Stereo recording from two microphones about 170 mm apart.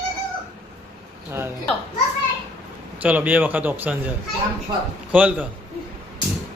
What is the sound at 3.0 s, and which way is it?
A man's voice, 10° right (ahead or behind).